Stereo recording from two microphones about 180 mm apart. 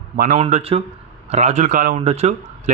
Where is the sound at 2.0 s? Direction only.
35° right (ahead or behind).